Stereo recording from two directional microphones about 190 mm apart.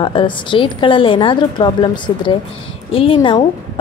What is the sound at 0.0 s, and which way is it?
Speech, 25° left (ahead or behind).